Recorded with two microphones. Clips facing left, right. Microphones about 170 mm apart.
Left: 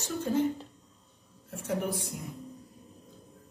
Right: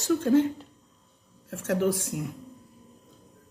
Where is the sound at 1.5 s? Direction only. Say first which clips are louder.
Right 6 dB; 90° right.